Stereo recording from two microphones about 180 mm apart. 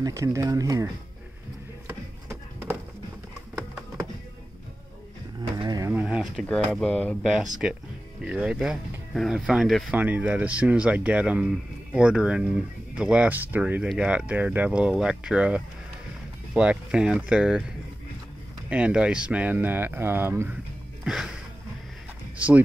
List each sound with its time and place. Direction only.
0.0 s speech: 15° right (ahead or behind)
1.9 s a sound: 10° right (ahead or behind)
5.6 s a sound: 20° right (ahead or behind)
6.4 s speech: centre (ahead or behind)
18.7 s speech: 5° right (ahead or behind)
21.0 s music: 5° right (ahead or behind)